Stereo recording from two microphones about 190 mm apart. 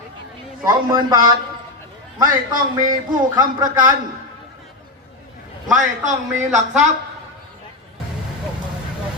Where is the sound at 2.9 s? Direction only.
20° right (ahead or behind).